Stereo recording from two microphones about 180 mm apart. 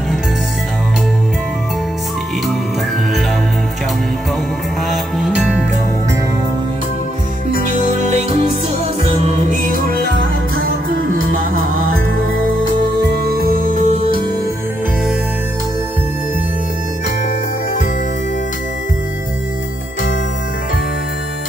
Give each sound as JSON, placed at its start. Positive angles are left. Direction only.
{"t": 4.9, "sound": "music", "side_deg": 0}
{"t": 7.5, "sound": "music", "side_deg": 55}
{"t": 9.0, "sound": "music", "side_deg": -35}
{"t": 13.3, "sound": "music", "side_deg": -55}
{"t": 13.7, "sound": "music", "side_deg": -45}